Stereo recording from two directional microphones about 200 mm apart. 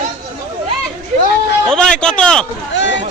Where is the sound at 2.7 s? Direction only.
65° left (ahead or behind).